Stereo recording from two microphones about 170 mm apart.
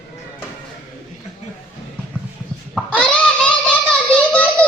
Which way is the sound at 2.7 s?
5° left (ahead or behind).